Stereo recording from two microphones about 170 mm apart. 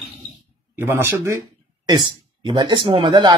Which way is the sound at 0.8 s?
10° right (ahead or behind).